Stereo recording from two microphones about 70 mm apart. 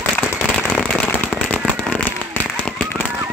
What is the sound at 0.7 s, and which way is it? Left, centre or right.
Firecracker, left.